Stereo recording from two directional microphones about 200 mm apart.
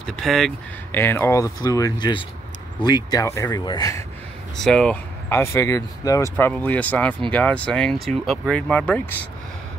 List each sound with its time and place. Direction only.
0.0 s speech: centre (ahead or behind); by 4.0 s 20° left (ahead or behind)
4.6 s speech: 5° left (ahead or behind)